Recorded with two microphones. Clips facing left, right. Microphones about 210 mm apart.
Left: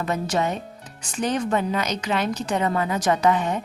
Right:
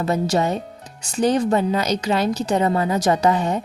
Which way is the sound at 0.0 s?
35° right (ahead or behind).